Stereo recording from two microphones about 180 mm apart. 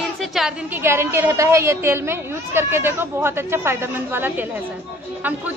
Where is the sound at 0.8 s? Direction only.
15° right (ahead or behind).